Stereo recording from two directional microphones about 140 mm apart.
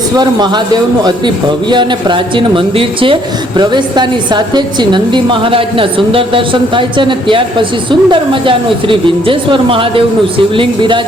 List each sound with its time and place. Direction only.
0.2 s a woman's voice: 30° right (ahead or behind)
1.7 s a woman's voice: 35° right (ahead or behind)